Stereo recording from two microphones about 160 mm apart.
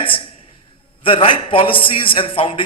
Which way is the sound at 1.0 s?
35° left (ahead or behind).